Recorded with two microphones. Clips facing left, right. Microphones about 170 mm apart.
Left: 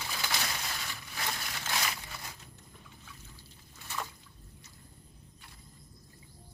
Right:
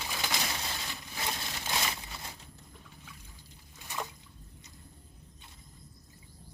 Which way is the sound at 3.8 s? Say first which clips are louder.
Even; 15° right (ahead or behind).